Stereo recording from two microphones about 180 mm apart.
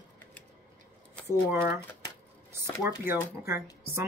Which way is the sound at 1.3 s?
15° right (ahead or behind).